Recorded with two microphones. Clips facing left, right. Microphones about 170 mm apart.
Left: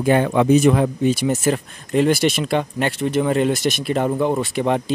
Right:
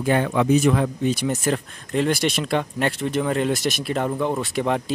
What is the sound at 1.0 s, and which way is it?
Speech, 5° left (ahead or behind).